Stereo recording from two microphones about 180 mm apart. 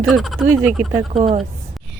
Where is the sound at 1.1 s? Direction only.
35° right (ahead or behind).